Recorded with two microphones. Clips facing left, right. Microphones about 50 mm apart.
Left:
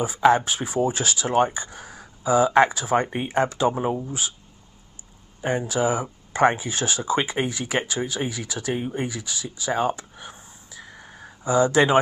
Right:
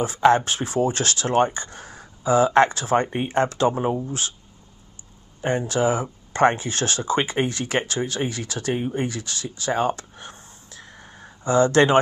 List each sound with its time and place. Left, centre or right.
0.0 s speech: centre
3.7 s speech: centre
5.4 s speech: centre
8.7 s speech: centre
9.0 s speech: centre